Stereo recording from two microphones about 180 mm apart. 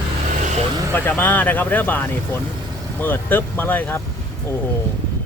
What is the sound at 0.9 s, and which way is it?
Speech, 10° left (ahead or behind).